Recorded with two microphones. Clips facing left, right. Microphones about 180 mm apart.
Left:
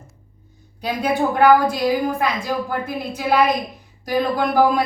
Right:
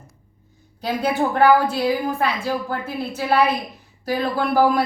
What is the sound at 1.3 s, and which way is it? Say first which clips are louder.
A woman's voice: left 2 dB; 15° left (ahead or behind).